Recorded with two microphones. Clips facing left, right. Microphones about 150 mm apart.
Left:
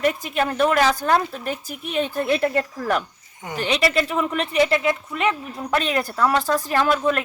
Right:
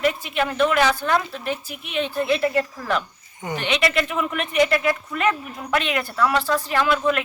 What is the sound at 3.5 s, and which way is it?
Speech, 35° left (ahead or behind).